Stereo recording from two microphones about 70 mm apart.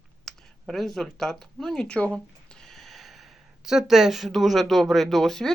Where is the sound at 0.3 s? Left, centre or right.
Centre.